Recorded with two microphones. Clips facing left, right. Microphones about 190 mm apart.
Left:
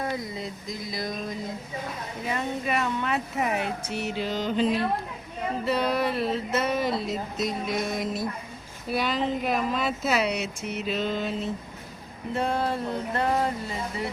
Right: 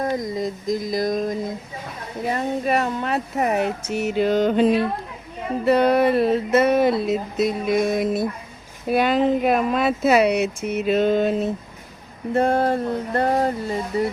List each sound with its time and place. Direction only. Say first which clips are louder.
0.0 s speech: right 8 dB; 40° right (ahead or behind)